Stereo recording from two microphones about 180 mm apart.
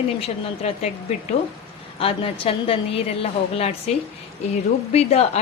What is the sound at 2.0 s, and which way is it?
Speech, 30° left (ahead or behind).